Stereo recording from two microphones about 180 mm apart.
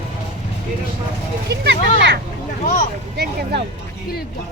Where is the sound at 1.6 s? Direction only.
75° right (ahead or behind).